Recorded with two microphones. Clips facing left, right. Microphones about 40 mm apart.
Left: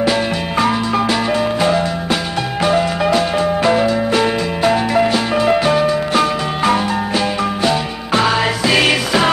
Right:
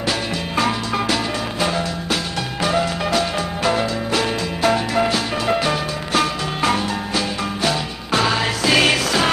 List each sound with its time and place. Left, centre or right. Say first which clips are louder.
1.0 s music: left 6 dB; left
3.1 s music: left 6 dB; left
8.1 s music: left 4 dB; left